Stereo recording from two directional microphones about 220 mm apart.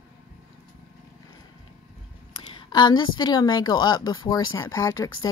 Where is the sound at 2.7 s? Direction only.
20° left (ahead or behind).